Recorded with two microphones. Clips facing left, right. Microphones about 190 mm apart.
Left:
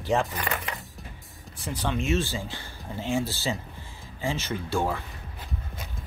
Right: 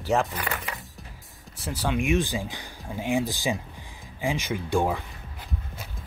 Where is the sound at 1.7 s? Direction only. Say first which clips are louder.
Right 2 dB; 10° right (ahead or behind).